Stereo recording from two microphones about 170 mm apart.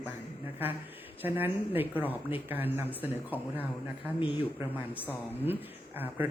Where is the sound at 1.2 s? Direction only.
10° right (ahead or behind).